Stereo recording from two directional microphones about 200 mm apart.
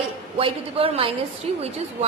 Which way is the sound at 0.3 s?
25° right (ahead or behind).